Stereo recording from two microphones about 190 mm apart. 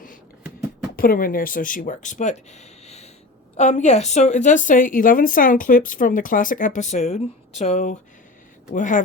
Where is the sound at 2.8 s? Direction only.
35° left (ahead or behind).